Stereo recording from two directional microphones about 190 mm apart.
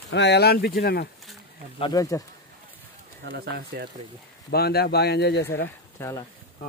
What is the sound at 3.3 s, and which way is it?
Speech, 55° right (ahead or behind).